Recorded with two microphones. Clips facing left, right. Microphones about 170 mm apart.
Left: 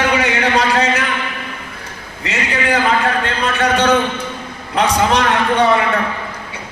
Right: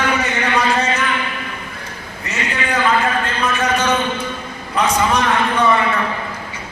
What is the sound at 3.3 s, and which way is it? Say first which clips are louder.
Speech: left 2 dB; 65° left (ahead or behind).